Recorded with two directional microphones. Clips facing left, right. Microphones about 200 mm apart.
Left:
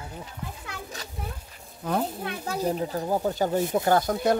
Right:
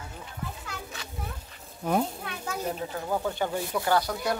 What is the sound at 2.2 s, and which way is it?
A child's voice, 35° left (ahead or behind).